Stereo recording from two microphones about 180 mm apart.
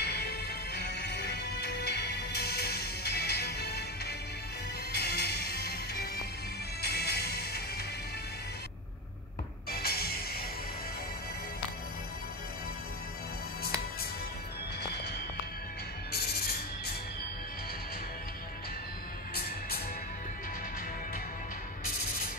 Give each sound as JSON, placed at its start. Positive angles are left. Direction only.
{"t": 0.0, "sound": "music", "side_deg": 60}
{"t": 9.7, "sound": "music", "side_deg": 60}
{"t": 16.1, "sound": "music", "side_deg": 60}